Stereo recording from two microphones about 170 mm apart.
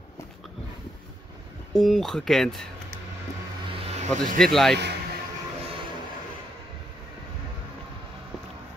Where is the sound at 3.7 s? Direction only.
40° right (ahead or behind).